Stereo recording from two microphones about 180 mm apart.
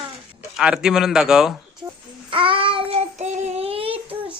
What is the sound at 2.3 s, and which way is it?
Child singing, 30° right (ahead or behind).